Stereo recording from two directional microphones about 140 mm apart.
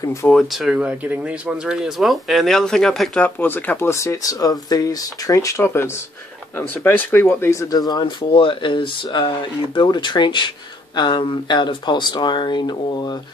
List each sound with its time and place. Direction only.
0.0 s speech: 20° left (ahead or behind)
0.3 s speech: centre (ahead or behind); by 13.2 s 30° left (ahead or behind)